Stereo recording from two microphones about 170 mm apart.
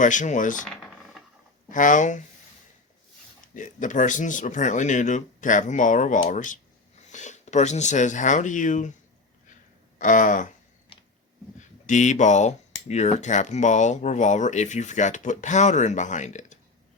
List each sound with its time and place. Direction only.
0.0 s cutlery: 50° left (ahead or behind)
0.6 s a sound: centre (ahead or behind)
1.7 s cutlery: 50° left (ahead or behind)
3.5 s cutlery: 50° left (ahead or behind)
7.1 s speech: 45° left (ahead or behind)
10.0 s cutlery: 50° left (ahead or behind)
11.9 s cutlery: 45° left (ahead or behind)